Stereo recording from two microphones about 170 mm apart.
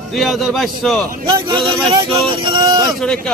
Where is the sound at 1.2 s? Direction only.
25° right (ahead or behind).